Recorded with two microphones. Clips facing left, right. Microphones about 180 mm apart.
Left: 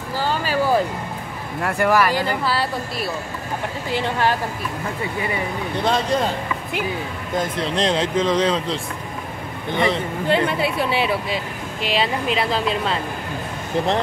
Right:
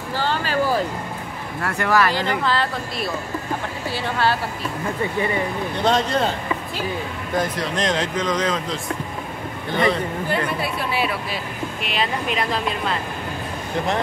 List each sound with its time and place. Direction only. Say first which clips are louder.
0.3 s a sound: left 2 dB; 10° left (ahead or behind)
1.6 s speech: left 2 dB; 15° left (ahead or behind)
5.9 s speech: right 1 dB; 10° left (ahead or behind)
7.3 s speech: left 1 dB; 25° left (ahead or behind)
9.8 s speech: even; 25° left (ahead or behind)